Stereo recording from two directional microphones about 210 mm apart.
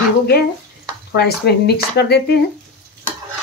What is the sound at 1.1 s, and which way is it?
Speech, 50° left (ahead or behind).